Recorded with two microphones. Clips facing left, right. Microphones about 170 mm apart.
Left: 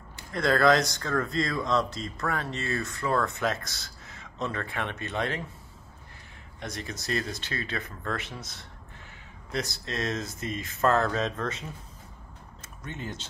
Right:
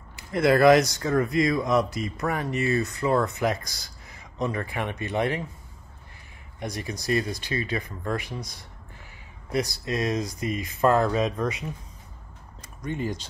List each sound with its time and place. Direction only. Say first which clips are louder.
0.3 s speech: right 5 dB; 20° right (ahead or behind)
6.6 s speech: right 4 dB; 15° right (ahead or behind)
9.8 s speech: right 5 dB; 15° right (ahead or behind)
12.8 s speech: right 8 dB; 10° right (ahead or behind)